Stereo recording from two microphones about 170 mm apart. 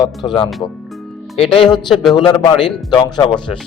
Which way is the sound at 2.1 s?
25° left (ahead or behind).